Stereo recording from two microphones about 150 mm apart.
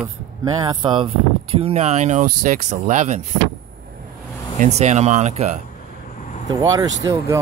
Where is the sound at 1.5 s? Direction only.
45° right (ahead or behind).